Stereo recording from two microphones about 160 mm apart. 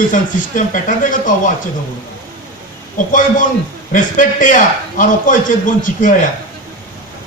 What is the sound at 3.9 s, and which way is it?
A man's voice, 55° left (ahead or behind).